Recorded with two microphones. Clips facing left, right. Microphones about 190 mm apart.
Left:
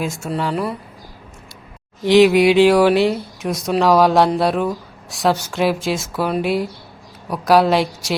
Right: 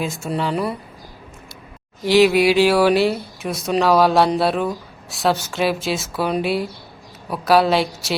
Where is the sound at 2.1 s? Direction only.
Centre (ahead or behind).